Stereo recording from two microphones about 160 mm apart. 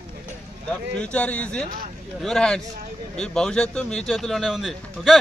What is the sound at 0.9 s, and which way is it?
A man's voice, 5° left (ahead or behind).